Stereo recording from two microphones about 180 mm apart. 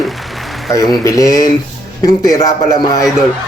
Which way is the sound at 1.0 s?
20° left (ahead or behind).